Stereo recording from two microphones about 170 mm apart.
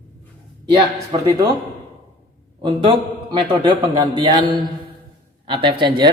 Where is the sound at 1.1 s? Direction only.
30° right (ahead or behind).